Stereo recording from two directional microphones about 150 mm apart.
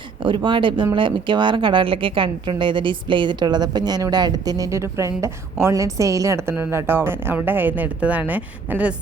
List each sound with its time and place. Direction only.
0.2 s a woman's voice: 35° right (ahead or behind); by 9.0 s 10° right (ahead or behind)